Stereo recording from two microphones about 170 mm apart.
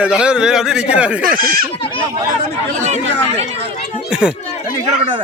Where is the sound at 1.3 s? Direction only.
60° right (ahead or behind).